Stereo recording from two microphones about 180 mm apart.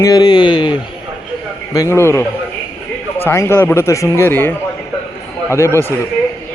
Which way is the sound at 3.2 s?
15° left (ahead or behind).